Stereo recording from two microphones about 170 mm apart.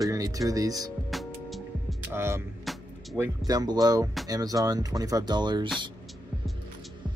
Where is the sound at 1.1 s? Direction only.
Centre (ahead or behind).